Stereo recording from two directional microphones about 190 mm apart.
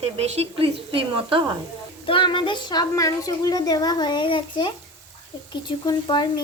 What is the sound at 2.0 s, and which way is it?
A woman's voice, 25° left (ahead or behind).